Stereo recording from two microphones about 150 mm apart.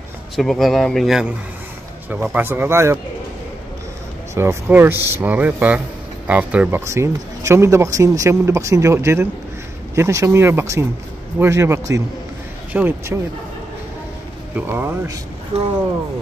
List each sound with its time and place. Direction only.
0.4 s speech: centre (ahead or behind); by 3.0 s 15° right (ahead or behind)
4.4 s speech: 15° right (ahead or behind)
14.5 s speech: 15° right (ahead or behind)
15.5 s speech: 45° right (ahead or behind)